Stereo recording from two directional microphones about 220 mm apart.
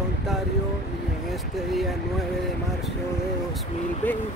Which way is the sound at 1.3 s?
Centre (ahead or behind).